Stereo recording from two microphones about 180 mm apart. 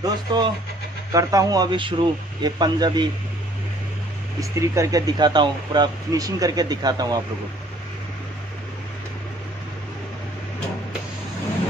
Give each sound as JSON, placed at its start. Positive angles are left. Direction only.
{"t": 0.0, "sound": "speech", "side_deg": -25}
{"t": 4.4, "sound": "speech", "side_deg": -15}